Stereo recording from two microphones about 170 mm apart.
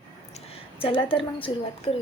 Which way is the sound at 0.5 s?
35° left (ahead or behind).